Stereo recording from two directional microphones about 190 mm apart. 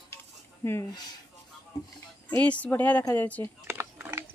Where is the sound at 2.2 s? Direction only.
10° left (ahead or behind).